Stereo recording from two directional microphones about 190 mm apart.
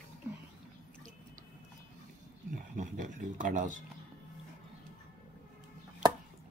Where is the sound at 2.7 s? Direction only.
40° right (ahead or behind).